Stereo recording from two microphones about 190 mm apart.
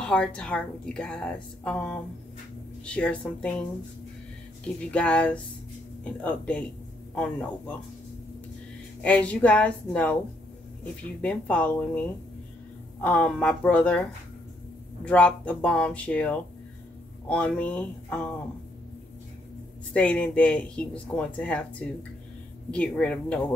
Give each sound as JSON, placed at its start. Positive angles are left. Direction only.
{"t": 0.0, "sound": "a woman's voice", "side_deg": 5}
{"t": 4.9, "sound": "a woman's voice", "side_deg": 5}
{"t": 9.0, "sound": "speech", "side_deg": 5}
{"t": 11.1, "sound": "speech", "side_deg": 5}
{"t": 13.0, "sound": "speech", "side_deg": 5}
{"t": 15.0, "sound": "speech", "side_deg": 5}
{"t": 19.9, "sound": "speech", "side_deg": 5}